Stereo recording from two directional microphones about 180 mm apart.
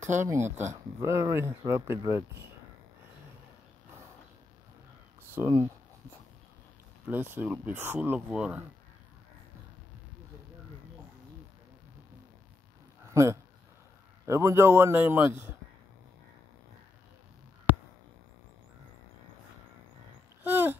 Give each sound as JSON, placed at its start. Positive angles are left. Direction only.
{"t": 0.0, "sound": "speech", "side_deg": -40}
{"t": 0.3, "sound": "speech", "side_deg": -15}
{"t": 5.3, "sound": "speech", "side_deg": -15}
{"t": 7.1, "sound": "speech", "side_deg": -10}
{"t": 13.1, "sound": "speech", "side_deg": -15}
{"t": 20.4, "sound": "a child's voice", "side_deg": -10}